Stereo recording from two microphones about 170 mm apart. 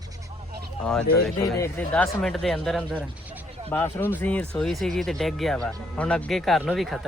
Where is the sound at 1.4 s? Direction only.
20° left (ahead or behind).